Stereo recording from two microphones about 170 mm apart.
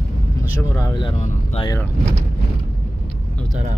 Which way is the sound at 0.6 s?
20° left (ahead or behind).